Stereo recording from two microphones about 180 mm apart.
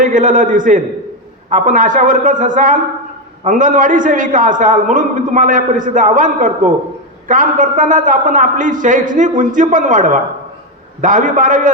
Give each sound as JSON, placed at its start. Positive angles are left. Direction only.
{"t": 0.0, "sound": "a man's voice", "side_deg": -45}